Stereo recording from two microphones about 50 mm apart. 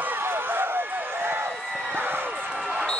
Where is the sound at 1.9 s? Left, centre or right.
Right.